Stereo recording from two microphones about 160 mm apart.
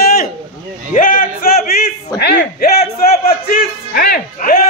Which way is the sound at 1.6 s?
75° left (ahead or behind).